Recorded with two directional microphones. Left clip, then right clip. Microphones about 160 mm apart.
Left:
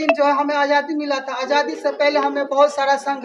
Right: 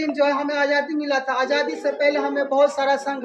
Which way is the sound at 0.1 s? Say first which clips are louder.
Left 5 dB; 15° right (ahead or behind).